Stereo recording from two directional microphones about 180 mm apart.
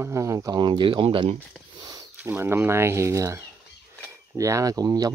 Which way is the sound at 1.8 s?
20° right (ahead or behind).